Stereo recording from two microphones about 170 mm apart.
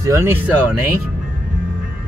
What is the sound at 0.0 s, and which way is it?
Speech, 15° right (ahead or behind).